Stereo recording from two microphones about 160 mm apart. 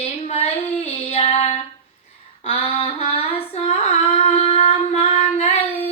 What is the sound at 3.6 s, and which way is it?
Child singing, 40° left (ahead or behind).